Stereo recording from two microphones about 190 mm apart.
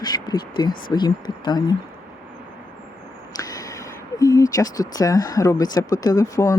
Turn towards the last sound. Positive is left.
turn(degrees=15)  # may be behind; listen again after turning